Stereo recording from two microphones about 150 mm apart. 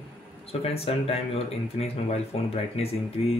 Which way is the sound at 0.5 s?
40° left (ahead or behind).